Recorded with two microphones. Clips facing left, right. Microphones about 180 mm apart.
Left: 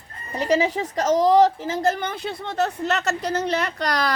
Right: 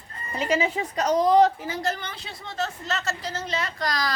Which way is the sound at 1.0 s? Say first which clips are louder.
Left 2 dB; 90° left.